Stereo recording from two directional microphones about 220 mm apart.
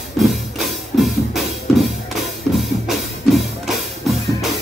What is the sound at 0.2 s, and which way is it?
Music, centre (ahead or behind).